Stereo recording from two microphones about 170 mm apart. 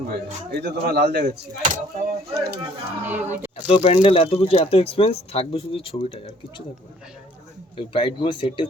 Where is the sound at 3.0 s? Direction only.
10° right (ahead or behind).